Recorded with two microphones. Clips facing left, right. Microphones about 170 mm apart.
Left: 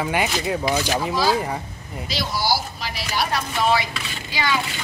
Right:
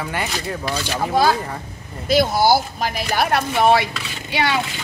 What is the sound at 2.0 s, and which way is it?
Speech, 50° right (ahead or behind).